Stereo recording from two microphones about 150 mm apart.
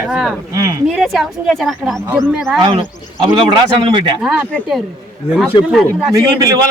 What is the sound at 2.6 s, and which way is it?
Speech, 40° right (ahead or behind).